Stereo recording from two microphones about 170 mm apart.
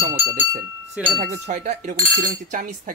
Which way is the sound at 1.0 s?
5° right (ahead or behind).